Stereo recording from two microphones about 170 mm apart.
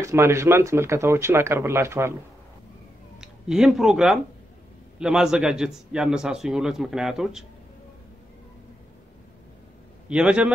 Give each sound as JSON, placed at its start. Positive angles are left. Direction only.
{"t": 0.0, "sound": "speech", "side_deg": -15}
{"t": 3.2, "sound": "a man's voice", "side_deg": -5}
{"t": 10.0, "sound": "a man's voice", "side_deg": -5}